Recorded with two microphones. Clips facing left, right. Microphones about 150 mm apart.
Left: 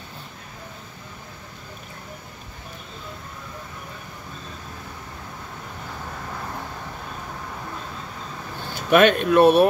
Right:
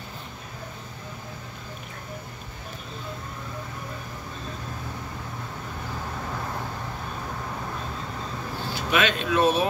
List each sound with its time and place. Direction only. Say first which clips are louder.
8.7 s speech: left 9 dB; 55° left (ahead or behind)